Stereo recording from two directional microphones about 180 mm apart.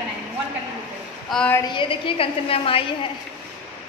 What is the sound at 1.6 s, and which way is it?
A woman's voice, 30° left (ahead or behind).